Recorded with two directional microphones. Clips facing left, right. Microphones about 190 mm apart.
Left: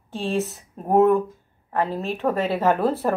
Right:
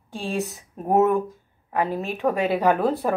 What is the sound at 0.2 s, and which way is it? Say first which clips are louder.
Speech: left 3 dB; centre (ahead or behind).